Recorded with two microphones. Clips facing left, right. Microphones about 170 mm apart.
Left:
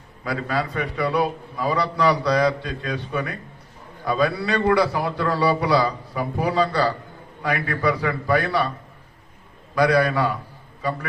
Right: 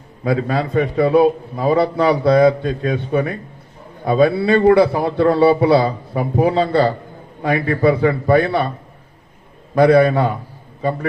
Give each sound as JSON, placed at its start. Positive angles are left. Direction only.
{"t": 0.6, "sound": "a man's voice", "side_deg": -50}
{"t": 9.7, "sound": "a man's voice", "side_deg": -55}